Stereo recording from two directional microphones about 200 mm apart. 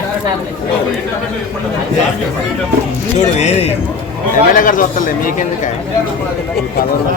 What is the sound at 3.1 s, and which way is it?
Speech, 35° left (ahead or behind).